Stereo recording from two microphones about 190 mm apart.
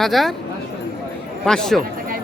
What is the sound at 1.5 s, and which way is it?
Speech, centre (ahead or behind).